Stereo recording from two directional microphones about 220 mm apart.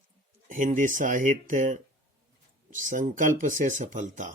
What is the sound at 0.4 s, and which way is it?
Speech, 35° right (ahead or behind).